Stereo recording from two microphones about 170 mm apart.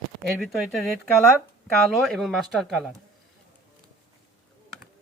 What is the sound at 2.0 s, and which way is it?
Speech, centre (ahead or behind).